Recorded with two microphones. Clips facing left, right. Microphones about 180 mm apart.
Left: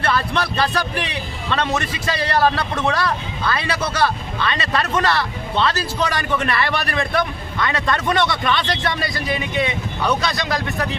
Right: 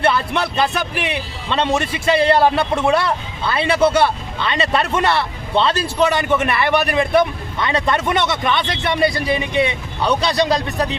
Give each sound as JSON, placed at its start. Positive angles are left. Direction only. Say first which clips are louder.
{"t": 0.0, "sound": "speech", "louder": "right 3 dB", "side_deg": -20}